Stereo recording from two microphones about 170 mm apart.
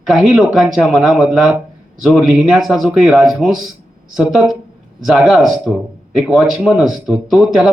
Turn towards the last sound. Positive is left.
turn(degrees=-5)  # may be behind; listen again after turning